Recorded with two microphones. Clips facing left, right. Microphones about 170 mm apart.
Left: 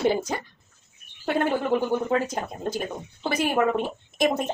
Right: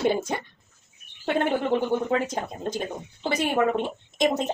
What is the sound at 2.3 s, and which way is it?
Speech, 25° right (ahead or behind).